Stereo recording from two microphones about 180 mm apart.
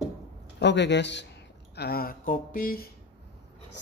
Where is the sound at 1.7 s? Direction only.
60° left (ahead or behind).